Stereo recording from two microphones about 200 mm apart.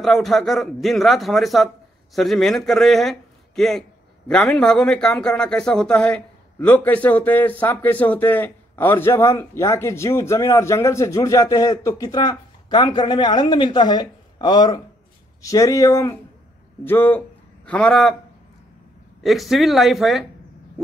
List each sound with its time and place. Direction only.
0.0 s a man's voice: centre (ahead or behind)
19.2 s a man's voice: centre (ahead or behind)